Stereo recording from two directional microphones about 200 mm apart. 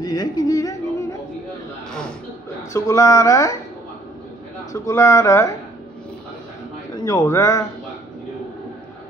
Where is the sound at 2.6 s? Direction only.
15° left (ahead or behind).